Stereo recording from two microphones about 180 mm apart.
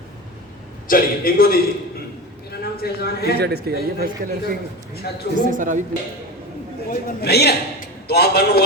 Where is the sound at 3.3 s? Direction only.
65° right (ahead or behind); by 5.8 s 45° right (ahead or behind).